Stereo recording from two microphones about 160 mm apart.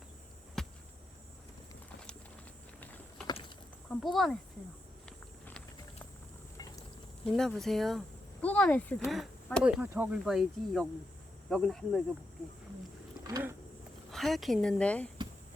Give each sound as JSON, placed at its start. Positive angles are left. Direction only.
{"t": 0.6, "sound": "a sound", "side_deg": 5}
{"t": 3.2, "sound": "a sound", "side_deg": 30}
{"t": 3.8, "sound": "speech", "side_deg": 0}
{"t": 5.0, "sound": "walk", "side_deg": 5}
{"t": 7.3, "sound": "speech", "side_deg": 5}
{"t": 9.0, "sound": "speech", "side_deg": 0}
{"t": 9.6, "sound": "speech", "side_deg": -10}
{"t": 13.2, "sound": "a sound", "side_deg": -20}
{"t": 14.1, "sound": "speech", "side_deg": 0}